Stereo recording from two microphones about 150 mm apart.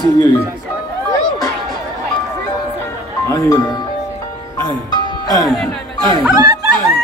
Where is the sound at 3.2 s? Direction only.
25° left (ahead or behind).